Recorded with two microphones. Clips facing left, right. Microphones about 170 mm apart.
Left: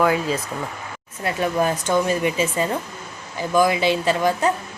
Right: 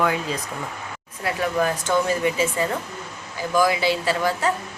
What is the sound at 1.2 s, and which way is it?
Speech, 25° left (ahead or behind).